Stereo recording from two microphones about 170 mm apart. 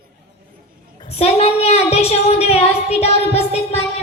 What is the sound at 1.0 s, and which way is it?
A woman's voice, 35° left (ahead or behind).